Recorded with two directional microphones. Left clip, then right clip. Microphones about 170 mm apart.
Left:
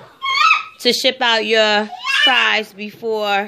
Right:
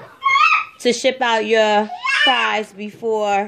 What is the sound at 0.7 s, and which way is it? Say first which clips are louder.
A woman's voice: left 1 dB; 5° right (ahead or behind).